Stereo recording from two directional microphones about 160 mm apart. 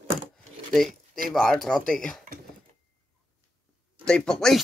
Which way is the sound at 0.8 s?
60° right (ahead or behind).